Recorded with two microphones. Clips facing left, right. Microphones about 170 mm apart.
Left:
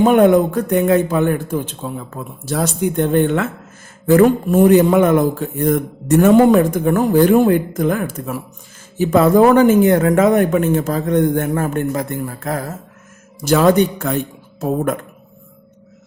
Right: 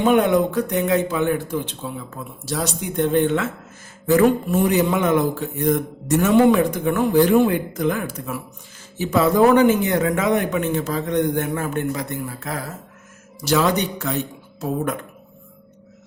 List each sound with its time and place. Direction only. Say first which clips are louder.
0.0 s a man's voice: left 5 dB; 50° left (ahead or behind)